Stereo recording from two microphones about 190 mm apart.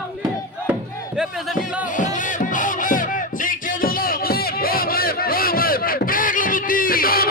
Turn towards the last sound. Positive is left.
turn(degrees=50)  # may be behind; listen again after turning